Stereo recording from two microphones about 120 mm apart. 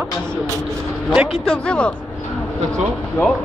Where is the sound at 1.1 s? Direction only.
5° left (ahead or behind).